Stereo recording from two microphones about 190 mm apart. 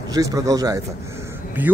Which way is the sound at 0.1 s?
20° right (ahead or behind).